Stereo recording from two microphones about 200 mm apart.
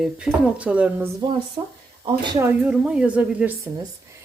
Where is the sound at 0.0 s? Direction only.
5° right (ahead or behind).